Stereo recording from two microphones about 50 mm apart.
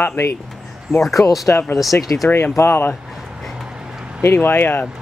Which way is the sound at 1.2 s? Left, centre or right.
Left.